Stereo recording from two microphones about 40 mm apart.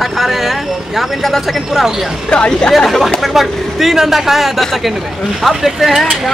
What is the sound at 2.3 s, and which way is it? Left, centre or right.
Speech, left.